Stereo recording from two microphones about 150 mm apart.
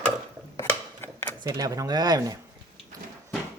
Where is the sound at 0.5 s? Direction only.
15° left (ahead or behind).